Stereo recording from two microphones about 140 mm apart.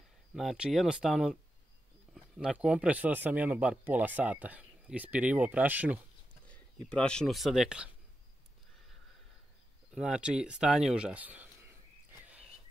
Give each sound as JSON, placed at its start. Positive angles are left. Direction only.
{"t": 0.3, "sound": "speech", "side_deg": -5}
{"t": 6.4, "sound": "speech", "side_deg": 10}
{"t": 9.9, "sound": "speech", "side_deg": -5}
{"t": 12.2, "sound": "a sound", "side_deg": -10}